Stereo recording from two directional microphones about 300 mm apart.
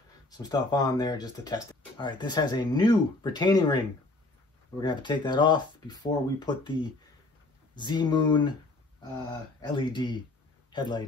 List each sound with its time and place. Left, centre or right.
0.3 s speech: centre
9.8 s speech: centre